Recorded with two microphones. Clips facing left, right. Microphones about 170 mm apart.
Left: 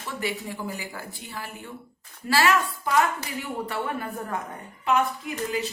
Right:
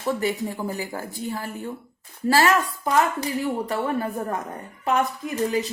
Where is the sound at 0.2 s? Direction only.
45° right (ahead or behind).